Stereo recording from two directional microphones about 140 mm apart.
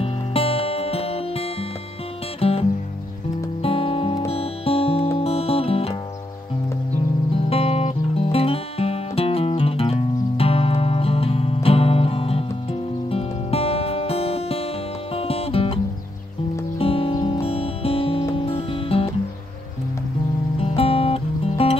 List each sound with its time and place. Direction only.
0.0 s music: 45° left (ahead or behind)
3.6 s music: 45° left (ahead or behind)
7.4 s music: 45° left (ahead or behind)
20.5 s music: 45° left (ahead or behind)